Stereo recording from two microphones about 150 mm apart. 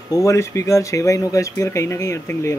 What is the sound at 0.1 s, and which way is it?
Speech, 20° left (ahead or behind).